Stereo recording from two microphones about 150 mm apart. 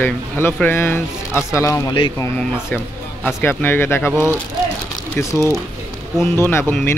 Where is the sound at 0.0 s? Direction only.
15° left (ahead or behind).